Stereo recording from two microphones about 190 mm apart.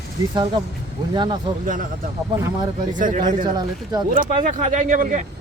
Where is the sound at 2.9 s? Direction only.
45° right (ahead or behind).